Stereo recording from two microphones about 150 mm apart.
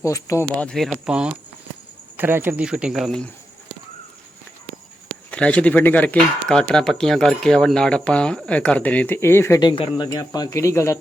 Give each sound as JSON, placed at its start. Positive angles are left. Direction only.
{"t": 0.0, "sound": "speech", "side_deg": 20}
{"t": 0.4, "sound": "speech", "side_deg": 5}
{"t": 5.3, "sound": "speech", "side_deg": 10}
{"t": 9.6, "sound": "speech", "side_deg": 30}